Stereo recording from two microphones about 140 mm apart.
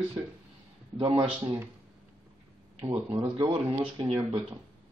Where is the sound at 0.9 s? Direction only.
35° right (ahead or behind).